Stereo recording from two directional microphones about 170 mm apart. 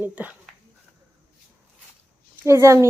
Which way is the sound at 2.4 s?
15° right (ahead or behind).